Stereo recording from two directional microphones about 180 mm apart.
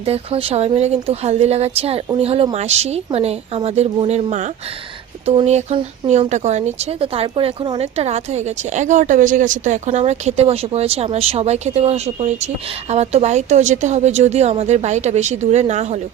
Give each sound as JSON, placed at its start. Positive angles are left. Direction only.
{"t": 0.0, "sound": "speech", "side_deg": -30}